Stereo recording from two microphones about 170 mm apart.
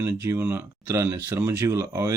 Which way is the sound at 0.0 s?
20° right (ahead or behind).